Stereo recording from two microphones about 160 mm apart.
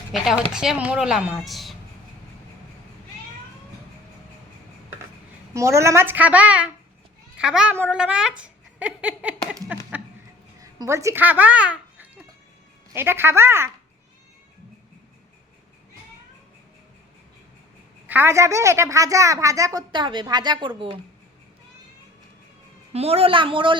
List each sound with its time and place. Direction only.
0.1 s a woman's voice: 5° right (ahead or behind)
5.5 s a woman's voice: 15° right (ahead or behind)
9.9 s a sound: 10° right (ahead or behind)
10.6 s a child's voice: 20° right (ahead or behind)
18.0 s a woman's voice: 10° right (ahead or behind); by 21.0 s 30° right (ahead or behind)
22.9 s speech: 40° right (ahead or behind)